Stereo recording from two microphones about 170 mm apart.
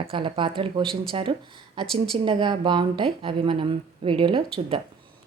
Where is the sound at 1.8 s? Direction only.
5° left (ahead or behind).